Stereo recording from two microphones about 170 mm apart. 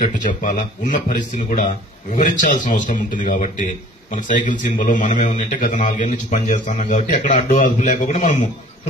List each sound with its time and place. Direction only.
0.4 s a man's voice: 45° left (ahead or behind)